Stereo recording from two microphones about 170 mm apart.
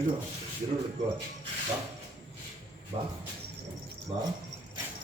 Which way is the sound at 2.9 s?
35° right (ahead or behind).